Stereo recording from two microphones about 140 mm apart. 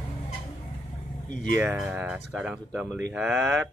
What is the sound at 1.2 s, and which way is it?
Speech, 70° left (ahead or behind).